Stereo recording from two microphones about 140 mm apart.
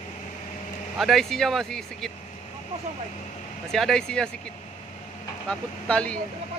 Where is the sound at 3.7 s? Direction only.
Centre (ahead or behind).